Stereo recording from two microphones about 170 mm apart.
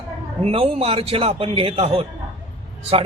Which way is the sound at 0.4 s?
35° right (ahead or behind).